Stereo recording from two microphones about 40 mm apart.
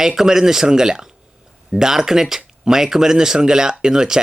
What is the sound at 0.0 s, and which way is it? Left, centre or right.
Speech, centre.